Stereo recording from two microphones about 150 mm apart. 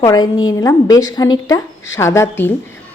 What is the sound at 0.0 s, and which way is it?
A woman's voice, 25° left (ahead or behind).